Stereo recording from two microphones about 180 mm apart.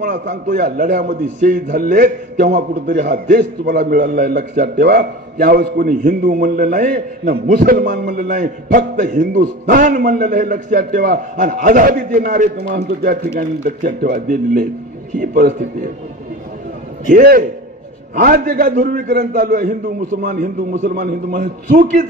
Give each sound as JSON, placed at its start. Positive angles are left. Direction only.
{"t": 0.0, "sound": "a man's voice", "side_deg": -60}
{"t": 17.1, "sound": "a man's voice", "side_deg": -50}